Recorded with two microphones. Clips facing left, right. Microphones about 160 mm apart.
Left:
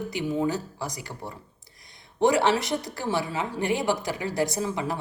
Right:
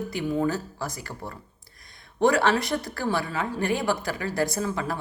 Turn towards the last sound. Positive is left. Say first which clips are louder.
# even
turn(degrees=20)  # may be behind; listen again after turning